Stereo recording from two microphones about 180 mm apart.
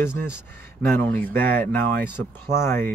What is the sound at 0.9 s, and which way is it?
Speech, 10° left (ahead or behind).